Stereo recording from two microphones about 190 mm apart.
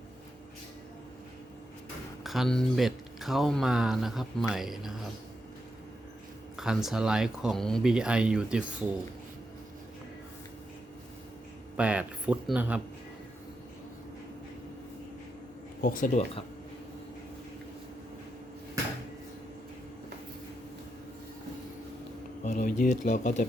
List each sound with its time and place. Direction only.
2.2 s speech: centre (ahead or behind)
6.6 s speech: centre (ahead or behind)
11.8 s speech: 5° right (ahead or behind)
15.8 s speech: 45° left (ahead or behind)
22.4 s speech: 40° left (ahead or behind)